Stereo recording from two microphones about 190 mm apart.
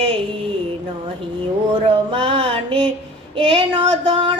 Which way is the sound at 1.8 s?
30° right (ahead or behind).